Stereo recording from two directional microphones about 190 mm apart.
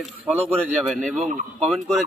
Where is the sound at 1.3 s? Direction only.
35° right (ahead or behind).